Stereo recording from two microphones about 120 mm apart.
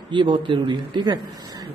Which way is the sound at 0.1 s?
40° right (ahead or behind).